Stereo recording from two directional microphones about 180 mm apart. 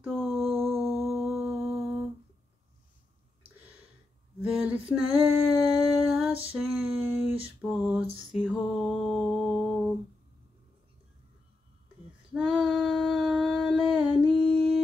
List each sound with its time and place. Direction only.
0.0 s a sound: centre (ahead or behind)
0.6 s music: centre (ahead or behind)
1.7 s humming: centre (ahead or behind)
4.4 s a sound: 5° right (ahead or behind)
8.4 s mantra: centre (ahead or behind)
12.4 s humming: 5° right (ahead or behind)